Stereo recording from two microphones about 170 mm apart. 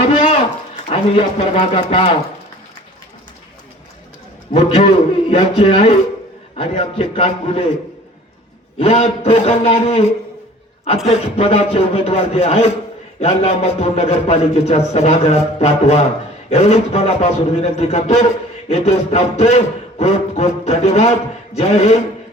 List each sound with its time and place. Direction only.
0.9 s a man's voice: 35° left (ahead or behind)
4.5 s a man's voice: 35° left (ahead or behind)
8.8 s a man's voice: 35° left (ahead or behind)